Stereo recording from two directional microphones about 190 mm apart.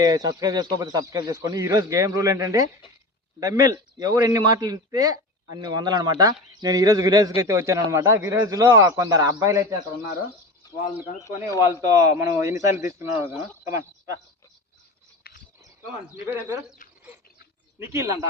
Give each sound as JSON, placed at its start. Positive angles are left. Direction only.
{"t": 0.0, "sound": "a man's voice", "side_deg": -20}
{"t": 11.6, "sound": "a man's voice", "side_deg": -15}
{"t": 15.3, "sound": "livestock", "side_deg": 55}
{"t": 17.7, "sound": "a man's voice", "side_deg": -15}